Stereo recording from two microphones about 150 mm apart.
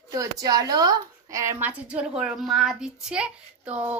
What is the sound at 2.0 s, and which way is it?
Speech, 5° right (ahead or behind).